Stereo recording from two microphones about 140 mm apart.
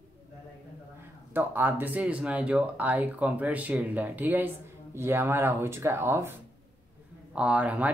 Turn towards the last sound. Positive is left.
turn(degrees=-10)  # may be behind; listen again after turning